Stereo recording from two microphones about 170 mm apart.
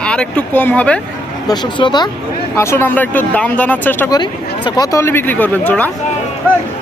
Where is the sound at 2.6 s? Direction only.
15° left (ahead or behind).